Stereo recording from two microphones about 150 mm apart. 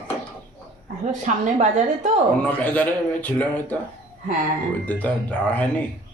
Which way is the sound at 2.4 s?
10° left (ahead or behind).